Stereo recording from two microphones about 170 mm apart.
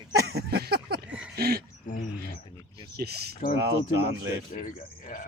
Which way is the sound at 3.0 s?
70° right (ahead or behind).